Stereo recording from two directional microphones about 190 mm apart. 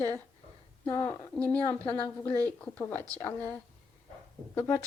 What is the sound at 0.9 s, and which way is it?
Speech, 15° left (ahead or behind).